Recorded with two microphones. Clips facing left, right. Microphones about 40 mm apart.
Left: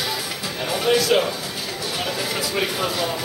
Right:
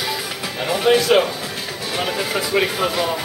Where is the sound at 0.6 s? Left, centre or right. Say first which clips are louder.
Right 4 dB; centre.